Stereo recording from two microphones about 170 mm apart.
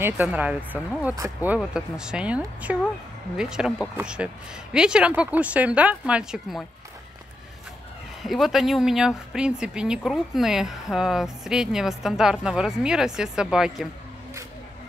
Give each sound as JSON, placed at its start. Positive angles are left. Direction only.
{"t": 0.0, "sound": "speech", "side_deg": -10}
{"t": 8.2, "sound": "speech", "side_deg": 0}